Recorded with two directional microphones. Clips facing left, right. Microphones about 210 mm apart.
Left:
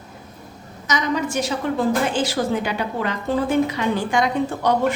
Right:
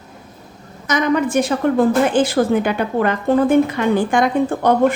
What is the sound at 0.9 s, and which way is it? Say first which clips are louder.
A woman's voice: right 6 dB; 55° right (ahead or behind).